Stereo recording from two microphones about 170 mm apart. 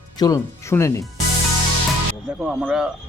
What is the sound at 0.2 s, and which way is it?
Speech, 20° left (ahead or behind).